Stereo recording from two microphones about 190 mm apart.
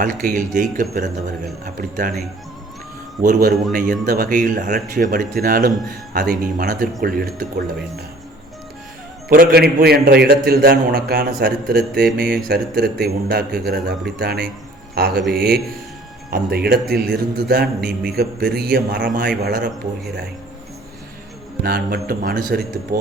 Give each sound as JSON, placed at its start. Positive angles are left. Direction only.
{"t": 0.0, "sound": "a man's voice", "side_deg": -45}
{"t": 3.2, "sound": "a man's voice", "side_deg": -45}
{"t": 9.3, "sound": "a man's voice", "side_deg": -55}
{"t": 21.6, "sound": "a man's voice", "side_deg": -50}